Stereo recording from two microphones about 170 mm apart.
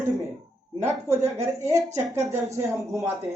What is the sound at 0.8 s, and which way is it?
Speech, 15° right (ahead or behind).